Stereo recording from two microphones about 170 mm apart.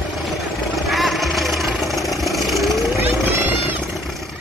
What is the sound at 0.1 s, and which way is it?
Vehicle, centre (ahead or behind).